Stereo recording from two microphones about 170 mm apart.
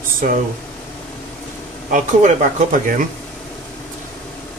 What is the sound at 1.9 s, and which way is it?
Speech, 50° right (ahead or behind).